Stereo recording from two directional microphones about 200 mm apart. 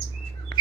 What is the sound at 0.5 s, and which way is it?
Chirp, 25° left (ahead or behind).